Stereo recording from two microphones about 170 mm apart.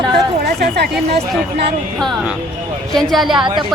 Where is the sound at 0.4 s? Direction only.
70° right (ahead or behind).